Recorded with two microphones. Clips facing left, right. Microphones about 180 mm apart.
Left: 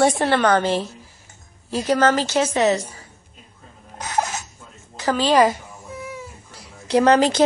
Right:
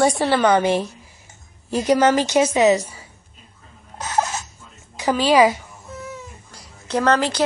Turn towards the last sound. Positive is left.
turn(degrees=15)  # may be behind; listen again after turning